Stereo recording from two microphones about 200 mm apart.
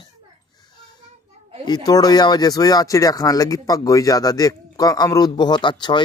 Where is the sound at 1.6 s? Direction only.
20° left (ahead or behind).